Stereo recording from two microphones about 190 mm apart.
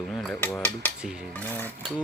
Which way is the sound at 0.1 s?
Centre (ahead or behind).